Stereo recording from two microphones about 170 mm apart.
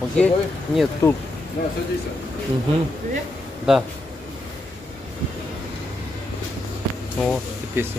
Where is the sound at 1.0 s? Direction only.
15° left (ahead or behind).